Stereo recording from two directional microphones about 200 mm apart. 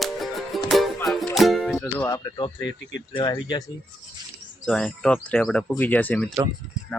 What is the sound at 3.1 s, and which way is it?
Speech, 20° left (ahead or behind).